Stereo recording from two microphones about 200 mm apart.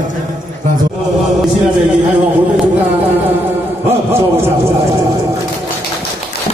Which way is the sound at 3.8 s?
30° right (ahead or behind).